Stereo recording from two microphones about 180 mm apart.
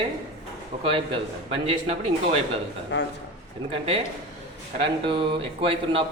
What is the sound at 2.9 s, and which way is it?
Speech, 80° left.